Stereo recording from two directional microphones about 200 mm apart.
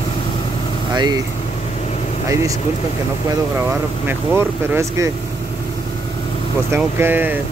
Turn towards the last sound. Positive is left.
turn(degrees=-10)  # may be behind; listen again after turning